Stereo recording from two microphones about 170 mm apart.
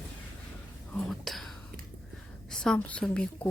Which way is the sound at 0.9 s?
Centre (ahead or behind).